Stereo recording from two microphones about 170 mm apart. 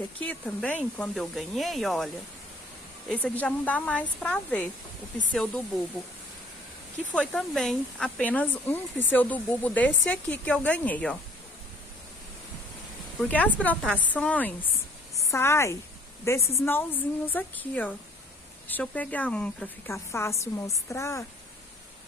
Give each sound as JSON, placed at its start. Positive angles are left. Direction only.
{"t": 0.2, "sound": "speech", "side_deg": 10}
{"t": 3.1, "sound": "speech", "side_deg": 10}
{"t": 7.1, "sound": "speech", "side_deg": 5}
{"t": 13.2, "sound": "a woman's voice", "side_deg": 10}